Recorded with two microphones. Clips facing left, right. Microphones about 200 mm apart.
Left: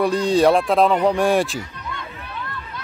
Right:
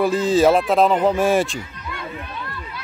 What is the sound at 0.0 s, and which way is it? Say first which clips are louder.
Speech: even; centre (ahead or behind).